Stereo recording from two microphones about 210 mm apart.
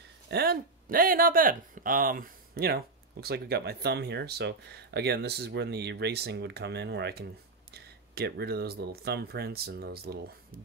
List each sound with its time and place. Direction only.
0.3 s speech: 45° right (ahead or behind)